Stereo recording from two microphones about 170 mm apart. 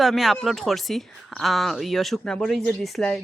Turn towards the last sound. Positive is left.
turn(degrees=0)  # may be behind; listen again after turning